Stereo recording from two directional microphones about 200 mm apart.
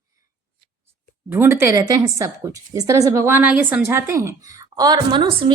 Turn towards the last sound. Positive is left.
turn(degrees=-25)  # may be behind; listen again after turning